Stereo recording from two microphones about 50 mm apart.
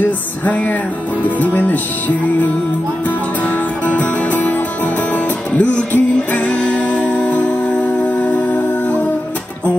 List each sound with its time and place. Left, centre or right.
0.0 s music: left
3.8 s music: left
5.6 s music: left